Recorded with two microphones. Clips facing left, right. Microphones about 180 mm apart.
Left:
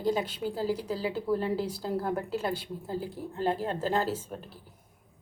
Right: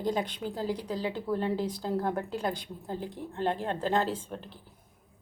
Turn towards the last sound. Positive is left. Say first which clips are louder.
# left 1 dB
turn(degrees=5)  # may be behind; listen again after turning